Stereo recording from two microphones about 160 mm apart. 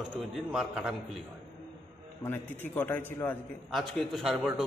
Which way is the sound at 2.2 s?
15° left (ahead or behind).